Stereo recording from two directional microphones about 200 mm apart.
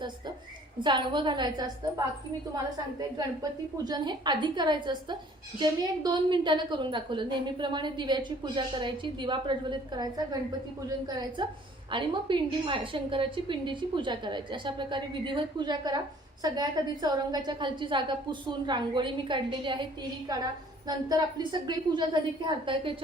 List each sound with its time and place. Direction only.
0.8 s a woman's voice: 25° right (ahead or behind)